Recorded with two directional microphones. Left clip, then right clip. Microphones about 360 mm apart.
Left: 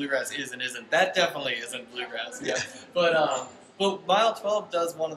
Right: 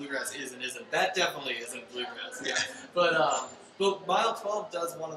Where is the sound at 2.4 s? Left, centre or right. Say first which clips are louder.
Right 1 dB; centre.